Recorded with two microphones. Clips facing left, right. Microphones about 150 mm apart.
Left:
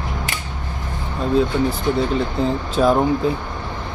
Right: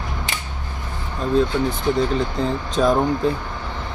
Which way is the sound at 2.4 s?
5° left (ahead or behind).